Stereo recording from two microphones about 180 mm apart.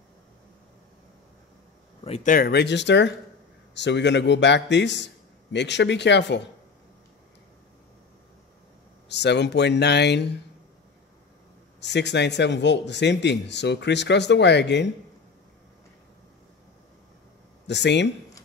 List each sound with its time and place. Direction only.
2.0 s speech: 35° left (ahead or behind)
2.3 s speech: 60° left (ahead or behind)
9.1 s speech: 70° left (ahead or behind)
11.8 s speech: 75° left (ahead or behind)
17.6 s speech: 75° left (ahead or behind)